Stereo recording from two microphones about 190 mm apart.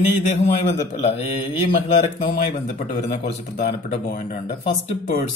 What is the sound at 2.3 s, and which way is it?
Speech, 40° left (ahead or behind).